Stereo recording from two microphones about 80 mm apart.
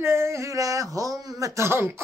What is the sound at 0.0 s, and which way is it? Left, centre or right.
Speech, right.